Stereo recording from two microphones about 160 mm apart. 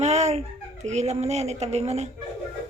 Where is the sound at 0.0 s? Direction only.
45° right (ahead or behind).